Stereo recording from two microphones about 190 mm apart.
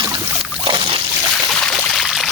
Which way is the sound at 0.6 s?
25° right (ahead or behind).